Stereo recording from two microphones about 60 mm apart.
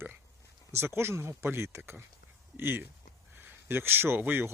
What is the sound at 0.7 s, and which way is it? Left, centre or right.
Speech, right.